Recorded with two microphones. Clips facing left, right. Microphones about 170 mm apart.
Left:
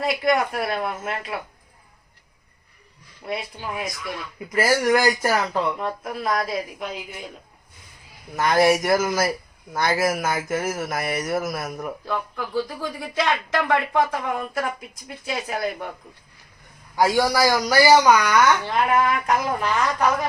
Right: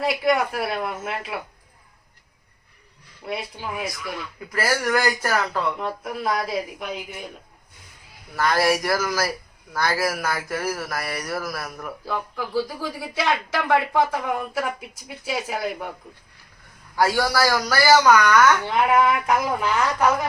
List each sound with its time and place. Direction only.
0.0 s speech: 5° right (ahead or behind)
3.2 s speech: centre (ahead or behind)
4.5 s speech: 20° left (ahead or behind)
5.8 s speech: centre (ahead or behind)
8.4 s speech: 20° left (ahead or behind)
12.0 s a woman's voice: 5° right (ahead or behind)
16.9 s speech: 15° left (ahead or behind)
18.7 s a woman's voice: 10° right (ahead or behind)